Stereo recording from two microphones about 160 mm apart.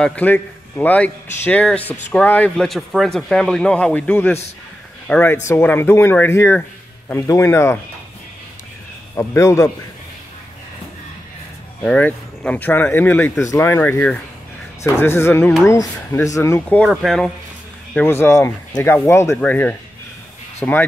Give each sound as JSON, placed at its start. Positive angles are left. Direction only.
{"t": 0.0, "sound": "speech", "side_deg": 10}
{"t": 9.1, "sound": "speech", "side_deg": 15}
{"t": 11.8, "sound": "speech", "side_deg": 10}
{"t": 17.9, "sound": "speech", "side_deg": 15}